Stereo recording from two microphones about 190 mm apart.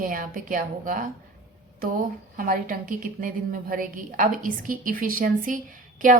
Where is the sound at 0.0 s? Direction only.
45° right (ahead or behind).